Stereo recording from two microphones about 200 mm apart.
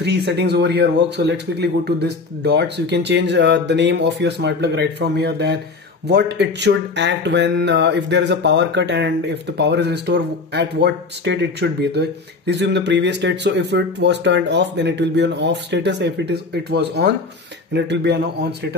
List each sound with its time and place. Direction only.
0.0 s speech: 60° right (ahead or behind)